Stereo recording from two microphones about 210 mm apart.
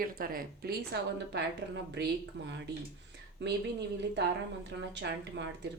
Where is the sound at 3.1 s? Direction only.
55° right (ahead or behind).